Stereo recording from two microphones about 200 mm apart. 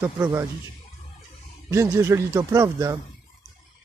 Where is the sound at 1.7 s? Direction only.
15° right (ahead or behind).